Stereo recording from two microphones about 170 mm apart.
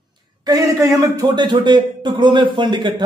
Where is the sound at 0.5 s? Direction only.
20° right (ahead or behind).